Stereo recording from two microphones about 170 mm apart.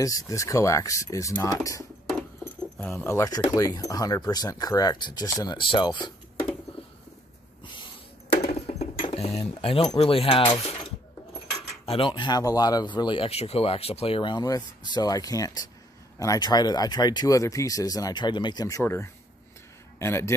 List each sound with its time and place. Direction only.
0.0 s speech: 20° left (ahead or behind)
8.5 s a sound: 40° left (ahead or behind)
9.0 s speech: 35° left (ahead or behind)
11.8 s speech: 30° left (ahead or behind); by 20.3 s 15° left (ahead or behind)